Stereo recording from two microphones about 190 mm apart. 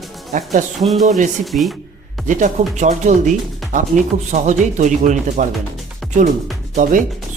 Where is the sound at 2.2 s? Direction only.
40° right (ahead or behind).